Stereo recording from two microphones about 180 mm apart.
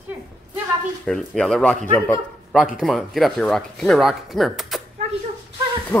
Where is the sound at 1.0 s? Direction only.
5° left (ahead or behind).